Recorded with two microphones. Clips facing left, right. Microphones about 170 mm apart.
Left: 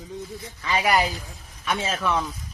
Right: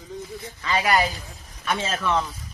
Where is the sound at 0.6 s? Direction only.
15° left (ahead or behind).